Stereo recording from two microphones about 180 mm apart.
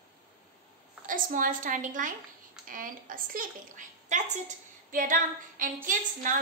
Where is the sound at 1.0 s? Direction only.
50° right (ahead or behind).